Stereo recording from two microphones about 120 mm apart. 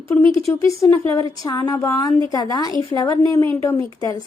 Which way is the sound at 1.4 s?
35° left (ahead or behind).